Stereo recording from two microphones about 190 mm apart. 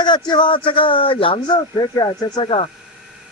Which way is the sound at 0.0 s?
25° left (ahead or behind).